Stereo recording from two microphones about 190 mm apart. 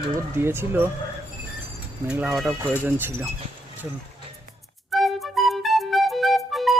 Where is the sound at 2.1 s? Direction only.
5° right (ahead or behind).